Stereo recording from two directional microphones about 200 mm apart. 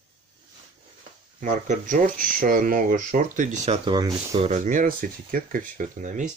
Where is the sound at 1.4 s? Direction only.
40° right (ahead or behind).